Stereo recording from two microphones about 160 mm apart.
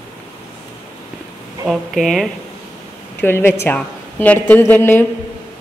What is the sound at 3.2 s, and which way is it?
A woman's voice, 15° left (ahead or behind).